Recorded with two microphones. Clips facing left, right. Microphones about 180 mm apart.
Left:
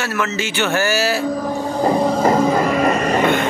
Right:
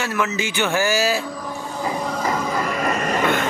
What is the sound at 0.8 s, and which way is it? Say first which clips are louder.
Speech: left 2 dB; 65° left (ahead or behind).